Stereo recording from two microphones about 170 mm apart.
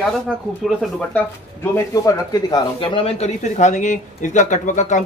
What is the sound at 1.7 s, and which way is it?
Speech, 20° left (ahead or behind).